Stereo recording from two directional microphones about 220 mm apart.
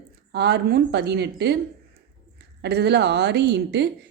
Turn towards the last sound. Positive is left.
turn(degrees=-50)  # may be behind; listen again after turning